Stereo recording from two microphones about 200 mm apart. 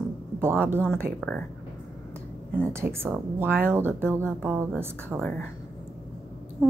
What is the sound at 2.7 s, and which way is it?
Speech, 10° right (ahead or behind).